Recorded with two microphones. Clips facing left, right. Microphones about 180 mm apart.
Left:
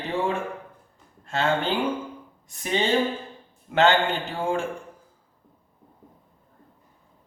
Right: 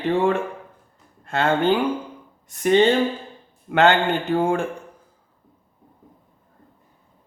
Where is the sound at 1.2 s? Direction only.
60° right (ahead or behind).